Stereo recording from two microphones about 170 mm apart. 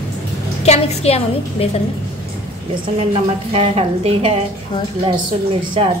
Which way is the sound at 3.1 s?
35° right (ahead or behind).